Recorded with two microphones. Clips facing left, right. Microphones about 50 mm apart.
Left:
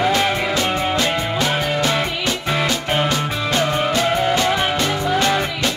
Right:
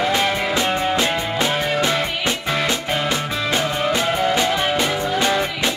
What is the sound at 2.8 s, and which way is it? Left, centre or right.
Music, centre.